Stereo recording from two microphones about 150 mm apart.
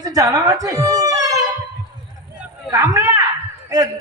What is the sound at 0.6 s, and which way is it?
Music, 25° right (ahead or behind).